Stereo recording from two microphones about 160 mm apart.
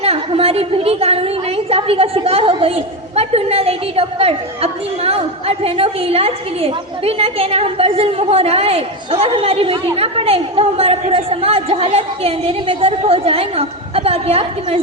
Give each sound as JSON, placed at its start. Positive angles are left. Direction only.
{"t": 0.0, "sound": "a woman's voice", "side_deg": -35}